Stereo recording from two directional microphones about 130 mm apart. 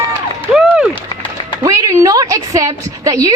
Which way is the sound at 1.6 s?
25° right (ahead or behind).